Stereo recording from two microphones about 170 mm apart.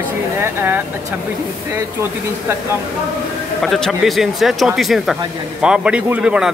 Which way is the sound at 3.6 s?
Centre (ahead or behind).